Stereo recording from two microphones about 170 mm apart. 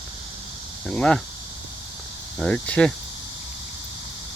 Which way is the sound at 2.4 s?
5° left (ahead or behind).